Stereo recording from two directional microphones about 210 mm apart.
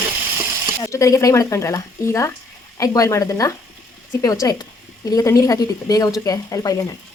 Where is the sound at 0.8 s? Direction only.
15° left (ahead or behind).